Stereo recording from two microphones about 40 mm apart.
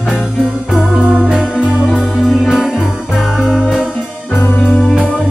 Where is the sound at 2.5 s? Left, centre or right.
Centre.